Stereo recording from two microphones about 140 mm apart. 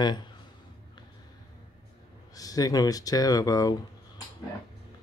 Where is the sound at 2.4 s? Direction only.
25° left (ahead or behind).